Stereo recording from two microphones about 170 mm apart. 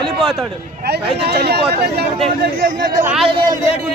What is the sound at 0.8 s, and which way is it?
Speech, 70° right (ahead or behind).